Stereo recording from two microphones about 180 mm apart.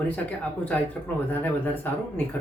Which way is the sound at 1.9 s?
10° left (ahead or behind).